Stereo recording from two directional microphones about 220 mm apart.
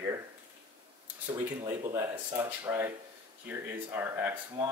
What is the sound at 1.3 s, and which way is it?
Speech, 15° right (ahead or behind).